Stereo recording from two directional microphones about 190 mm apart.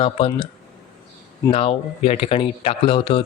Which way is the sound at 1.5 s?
30° left (ahead or behind).